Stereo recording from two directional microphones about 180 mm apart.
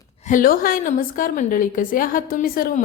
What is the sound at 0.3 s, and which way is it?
A woman's voice, 50° left (ahead or behind).